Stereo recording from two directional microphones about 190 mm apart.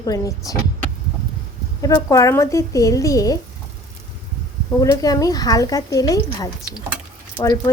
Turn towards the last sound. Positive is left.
turn(degrees=15)  # may be behind; listen again after turning